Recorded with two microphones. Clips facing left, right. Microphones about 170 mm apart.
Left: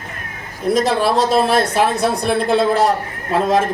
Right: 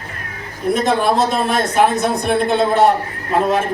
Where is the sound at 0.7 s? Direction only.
35° left (ahead or behind).